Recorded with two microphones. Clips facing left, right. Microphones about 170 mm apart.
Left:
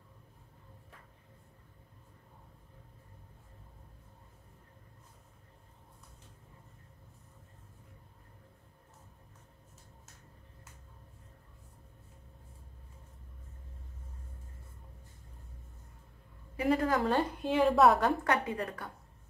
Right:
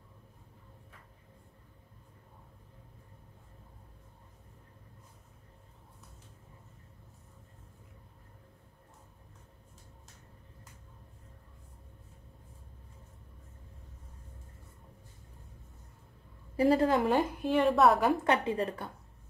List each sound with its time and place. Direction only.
16.5 s a woman's voice: 30° right (ahead or behind); by 17.3 s 15° right (ahead or behind)
17.4 s a woman's voice: centre (ahead or behind)
18.2 s a woman's voice: 25° right (ahead or behind)